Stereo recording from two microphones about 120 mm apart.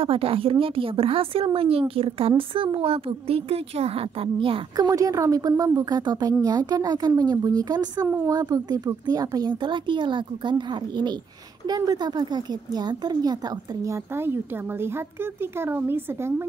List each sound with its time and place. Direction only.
0.0 s a woman's voice: 50° right (ahead or behind)
4.7 s speech: 30° right (ahead or behind)
13.8 s speech: 20° right (ahead or behind)